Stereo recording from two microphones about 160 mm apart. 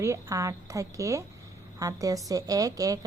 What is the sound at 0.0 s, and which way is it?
A woman's voice, 20° right (ahead or behind).